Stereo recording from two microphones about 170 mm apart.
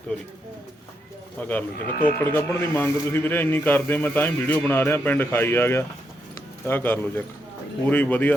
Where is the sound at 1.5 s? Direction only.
10° left (ahead or behind).